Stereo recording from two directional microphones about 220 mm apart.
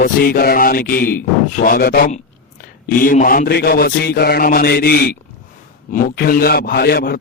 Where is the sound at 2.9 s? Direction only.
40° left (ahead or behind).